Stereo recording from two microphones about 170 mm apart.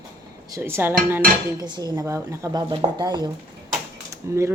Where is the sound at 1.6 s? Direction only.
25° right (ahead or behind).